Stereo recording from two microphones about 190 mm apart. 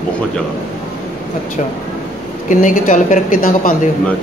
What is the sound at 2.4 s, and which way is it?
A woman's voice, 40° left (ahead or behind).